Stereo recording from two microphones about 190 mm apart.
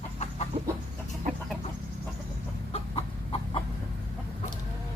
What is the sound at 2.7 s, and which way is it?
Chicken, 30° left (ahead or behind).